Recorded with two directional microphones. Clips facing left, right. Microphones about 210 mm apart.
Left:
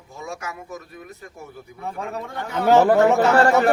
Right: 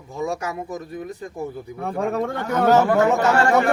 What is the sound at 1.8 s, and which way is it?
Speech, 55° right (ahead or behind).